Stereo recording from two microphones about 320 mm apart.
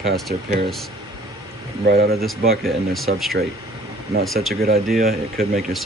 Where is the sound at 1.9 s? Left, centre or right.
Right.